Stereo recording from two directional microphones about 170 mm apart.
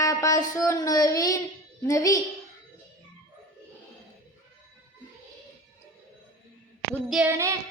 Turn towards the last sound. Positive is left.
turn(degrees=-15)  # may be behind; listen again after turning